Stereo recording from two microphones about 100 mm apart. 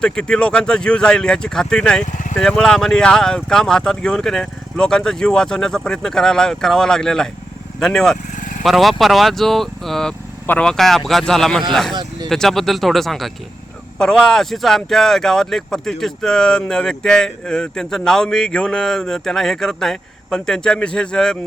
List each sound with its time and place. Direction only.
0.0 s speech: 10° left (ahead or behind)
10.4 s speech: 15° left (ahead or behind)
10.7 s speech: 5° left (ahead or behind)